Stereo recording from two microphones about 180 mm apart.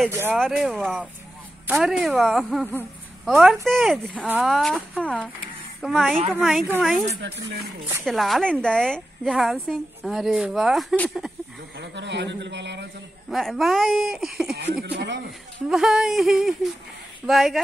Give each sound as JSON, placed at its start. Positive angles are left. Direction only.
{"t": 0.1, "sound": "speech", "side_deg": -15}
{"t": 0.4, "sound": "a woman's voice", "side_deg": 0}
{"t": 7.2, "sound": "a man's voice", "side_deg": -75}
{"t": 8.0, "sound": "a woman's voice", "side_deg": 0}
{"t": 11.7, "sound": "a man's voice", "side_deg": -75}
{"t": 13.3, "sound": "a woman's voice", "side_deg": 0}
{"t": 14.5, "sound": "speech", "side_deg": -60}
{"t": 15.0, "sound": "a man's voice", "side_deg": -75}
{"t": 15.7, "sound": "a woman's voice", "side_deg": -5}